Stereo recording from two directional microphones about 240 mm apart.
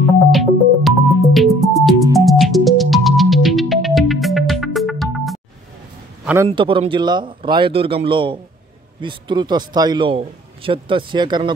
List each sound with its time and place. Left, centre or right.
0.3 s music: centre
6.2 s a man's voice: centre
6.5 s a man's voice: right